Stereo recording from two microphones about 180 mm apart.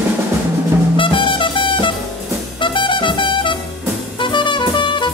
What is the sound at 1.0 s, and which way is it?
Music, 30° left (ahead or behind).